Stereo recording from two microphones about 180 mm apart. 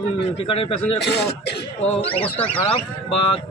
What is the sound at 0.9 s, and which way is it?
Speech, 70° left (ahead or behind).